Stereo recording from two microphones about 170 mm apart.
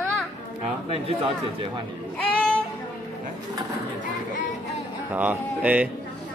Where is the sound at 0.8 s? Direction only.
35° right (ahead or behind).